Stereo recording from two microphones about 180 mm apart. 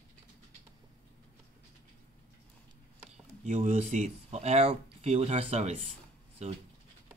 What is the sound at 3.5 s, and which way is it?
Speech, 45° right (ahead or behind).